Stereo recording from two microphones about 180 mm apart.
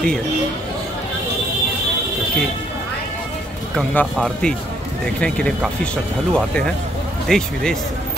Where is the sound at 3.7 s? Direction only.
5° left (ahead or behind).